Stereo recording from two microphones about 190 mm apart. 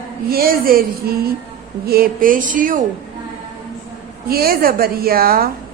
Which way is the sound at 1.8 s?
50° right (ahead or behind).